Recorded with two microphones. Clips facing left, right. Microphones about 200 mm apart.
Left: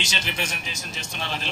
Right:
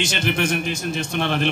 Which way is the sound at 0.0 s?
55° right (ahead or behind).